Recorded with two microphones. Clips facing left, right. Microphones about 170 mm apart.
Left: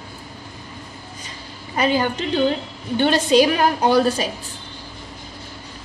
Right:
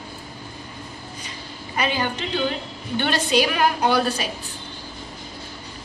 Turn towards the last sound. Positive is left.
turn(degrees=40)  # may be behind; listen again after turning